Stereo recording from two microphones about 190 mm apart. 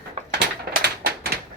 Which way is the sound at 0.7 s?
55° right (ahead or behind).